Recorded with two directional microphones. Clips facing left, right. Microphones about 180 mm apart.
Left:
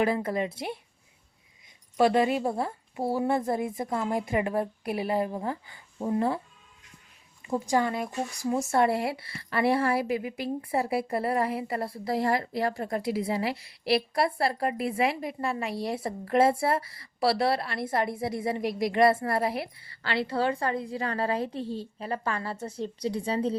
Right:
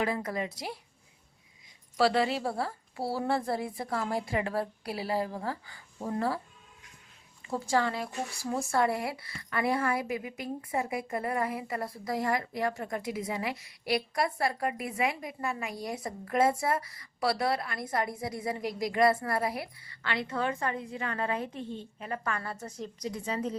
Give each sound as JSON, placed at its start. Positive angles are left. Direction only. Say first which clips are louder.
{"t": 0.0, "sound": "a woman's voice", "louder": "left 5 dB", "side_deg": 30}
{"t": 2.0, "sound": "a woman's voice", "louder": "left 4 dB", "side_deg": 20}
{"t": 7.4, "sound": "a woman's voice", "louder": "left 3 dB", "side_deg": 15}